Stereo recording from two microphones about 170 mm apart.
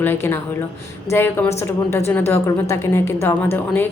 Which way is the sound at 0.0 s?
10° left (ahead or behind).